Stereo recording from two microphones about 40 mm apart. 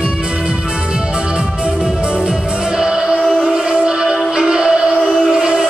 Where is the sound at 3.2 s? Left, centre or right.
Centre.